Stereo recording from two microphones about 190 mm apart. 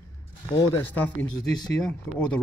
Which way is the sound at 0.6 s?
10° left (ahead or behind).